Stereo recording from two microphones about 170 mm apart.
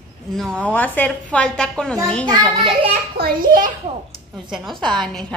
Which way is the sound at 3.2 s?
60° right (ahead or behind).